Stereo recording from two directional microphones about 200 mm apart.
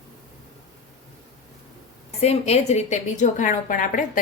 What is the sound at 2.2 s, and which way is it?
A woman's voice, 35° left (ahead or behind).